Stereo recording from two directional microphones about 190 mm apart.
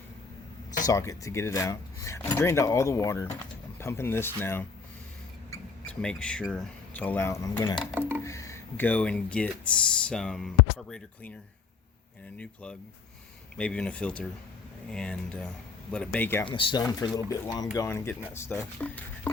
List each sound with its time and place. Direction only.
0.9 s speech: 15° left (ahead or behind)
7.9 s music: 10° right (ahead or behind)
8.2 s speech: 15° left (ahead or behind)
13.6 s speech: 5° left (ahead or behind)
16.5 s speech: 25° left (ahead or behind); by 19.3 s 10° left (ahead or behind)